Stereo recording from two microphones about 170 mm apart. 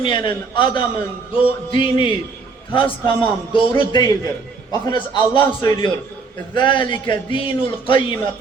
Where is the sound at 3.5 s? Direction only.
25° left (ahead or behind).